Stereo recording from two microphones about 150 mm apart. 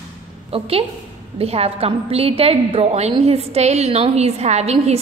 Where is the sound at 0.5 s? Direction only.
40° right (ahead or behind).